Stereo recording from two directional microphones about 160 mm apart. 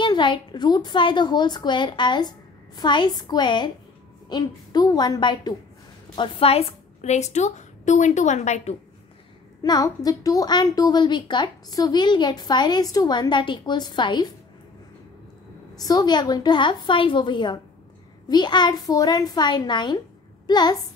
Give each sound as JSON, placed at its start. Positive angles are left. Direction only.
{"t": 0.0, "sound": "a woman's voice", "side_deg": 30}
{"t": 9.6, "sound": "a woman's voice", "side_deg": 25}
{"t": 15.7, "sound": "a woman's voice", "side_deg": 25}